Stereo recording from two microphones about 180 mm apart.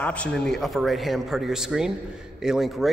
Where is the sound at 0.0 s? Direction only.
5° left (ahead or behind).